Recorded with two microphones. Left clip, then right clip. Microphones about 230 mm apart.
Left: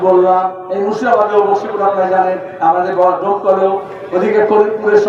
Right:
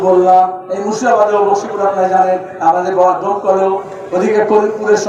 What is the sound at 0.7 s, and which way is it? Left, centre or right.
A man's voice, right.